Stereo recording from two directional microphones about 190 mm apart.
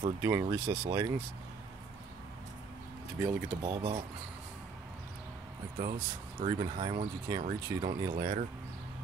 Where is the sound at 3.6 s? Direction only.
25° right (ahead or behind).